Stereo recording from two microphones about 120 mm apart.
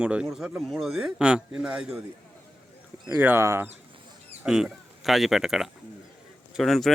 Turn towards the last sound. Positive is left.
turn(degrees=0)  # may be behind; listen again after turning